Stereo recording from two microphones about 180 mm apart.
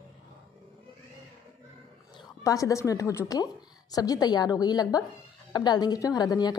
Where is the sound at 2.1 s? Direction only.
20° left (ahead or behind).